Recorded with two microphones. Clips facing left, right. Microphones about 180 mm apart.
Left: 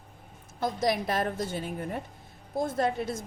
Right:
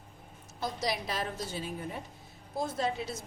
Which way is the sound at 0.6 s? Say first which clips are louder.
Left 6 dB; 50° left (ahead or behind).